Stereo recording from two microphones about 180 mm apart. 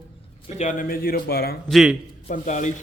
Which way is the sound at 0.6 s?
45° left (ahead or behind).